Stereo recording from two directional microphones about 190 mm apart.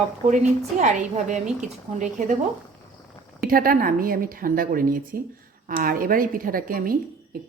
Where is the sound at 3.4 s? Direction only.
50° right (ahead or behind).